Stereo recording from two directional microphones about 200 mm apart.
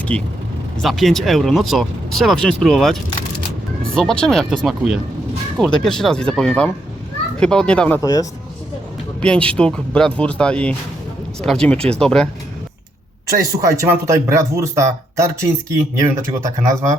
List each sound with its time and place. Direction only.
0.1 s speech: 5° left (ahead or behind)
9.2 s speech: 5° left (ahead or behind)
13.7 s speech: 15° right (ahead or behind)